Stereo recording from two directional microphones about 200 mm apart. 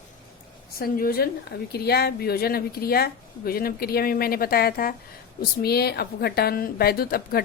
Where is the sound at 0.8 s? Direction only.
50° left (ahead or behind).